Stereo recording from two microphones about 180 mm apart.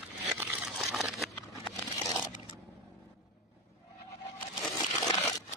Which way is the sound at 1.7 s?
20° left (ahead or behind).